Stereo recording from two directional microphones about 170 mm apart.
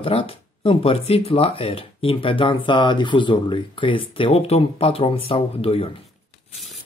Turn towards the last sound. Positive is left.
turn(degrees=35)  # may be behind; listen again after turning